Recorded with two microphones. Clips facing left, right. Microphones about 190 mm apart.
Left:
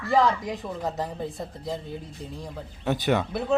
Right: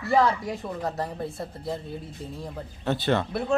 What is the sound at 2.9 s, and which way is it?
Speech, 15° left (ahead or behind).